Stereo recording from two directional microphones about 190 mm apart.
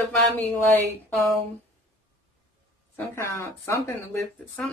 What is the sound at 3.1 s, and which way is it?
Speech, 15° left (ahead or behind).